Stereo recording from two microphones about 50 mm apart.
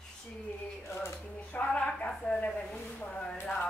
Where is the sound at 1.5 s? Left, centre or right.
Left.